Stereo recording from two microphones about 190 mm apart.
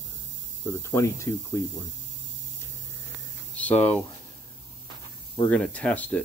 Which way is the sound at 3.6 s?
10° left (ahead or behind).